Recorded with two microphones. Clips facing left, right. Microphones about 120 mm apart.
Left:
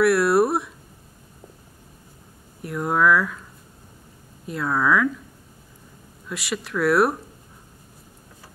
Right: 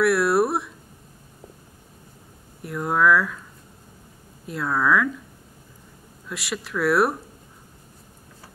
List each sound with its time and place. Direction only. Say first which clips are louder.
0.0 s speech: left 2 dB; centre (ahead or behind)
2.6 s speech: even; centre (ahead or behind)
4.5 s speech: left 1 dB; centre (ahead or behind)
6.2 s speech: left 2 dB; centre (ahead or behind)